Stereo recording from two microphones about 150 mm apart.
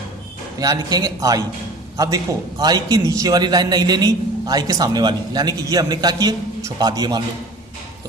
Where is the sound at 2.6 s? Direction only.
25° right (ahead or behind).